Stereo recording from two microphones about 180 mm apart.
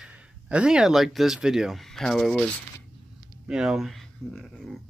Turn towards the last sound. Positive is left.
turn(degrees=0)  # may be behind; listen again after turning